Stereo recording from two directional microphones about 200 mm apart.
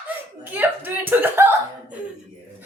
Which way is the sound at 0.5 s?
10° right (ahead or behind).